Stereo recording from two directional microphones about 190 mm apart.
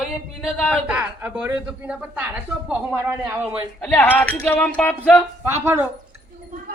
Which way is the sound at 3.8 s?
10° left (ahead or behind).